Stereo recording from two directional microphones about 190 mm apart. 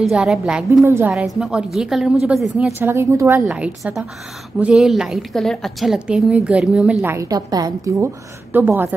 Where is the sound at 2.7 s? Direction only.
10° right (ahead or behind).